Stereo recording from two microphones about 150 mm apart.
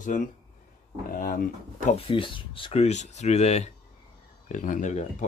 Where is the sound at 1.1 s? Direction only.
70° left (ahead or behind).